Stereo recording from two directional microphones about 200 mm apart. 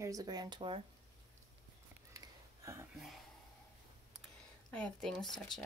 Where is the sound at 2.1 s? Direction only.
15° right (ahead or behind).